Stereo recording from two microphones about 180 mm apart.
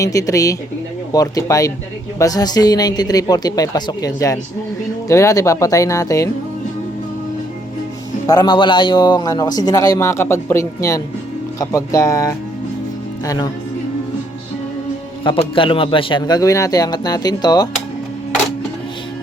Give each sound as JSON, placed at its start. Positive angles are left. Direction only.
{"t": 0.0, "sound": "a man's voice", "side_deg": 20}
{"t": 8.3, "sound": "a man's voice", "side_deg": 25}
{"t": 15.2, "sound": "a man's voice", "side_deg": 30}